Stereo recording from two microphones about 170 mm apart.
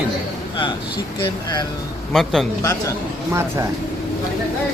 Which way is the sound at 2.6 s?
20° left (ahead or behind).